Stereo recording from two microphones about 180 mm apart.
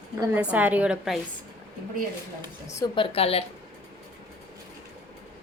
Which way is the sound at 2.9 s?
35° left (ahead or behind).